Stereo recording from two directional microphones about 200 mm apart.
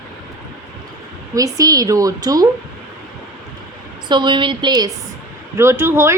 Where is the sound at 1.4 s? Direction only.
15° right (ahead or behind).